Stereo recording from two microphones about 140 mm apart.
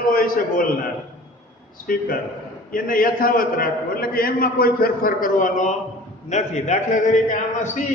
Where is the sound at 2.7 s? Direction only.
85° left; by 7.8 s 60° left (ahead or behind).